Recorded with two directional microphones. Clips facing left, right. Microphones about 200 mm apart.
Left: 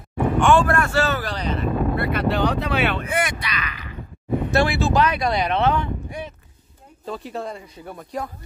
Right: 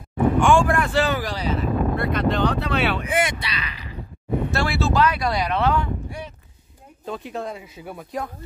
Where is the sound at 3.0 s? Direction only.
25° right (ahead or behind).